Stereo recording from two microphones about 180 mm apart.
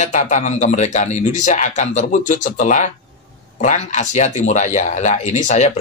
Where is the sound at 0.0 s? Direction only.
40° left (ahead or behind).